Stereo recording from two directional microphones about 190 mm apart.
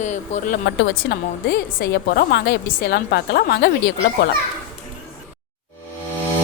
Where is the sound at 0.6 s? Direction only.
65° left (ahead or behind).